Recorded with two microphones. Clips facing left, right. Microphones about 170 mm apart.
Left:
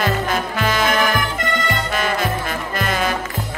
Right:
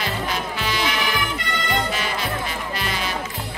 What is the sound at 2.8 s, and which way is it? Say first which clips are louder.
Music: left 8 dB; 50° left (ahead or behind).